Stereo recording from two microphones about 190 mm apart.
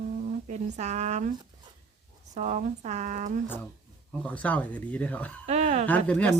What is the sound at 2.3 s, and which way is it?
A woman's voice, 40° right (ahead or behind).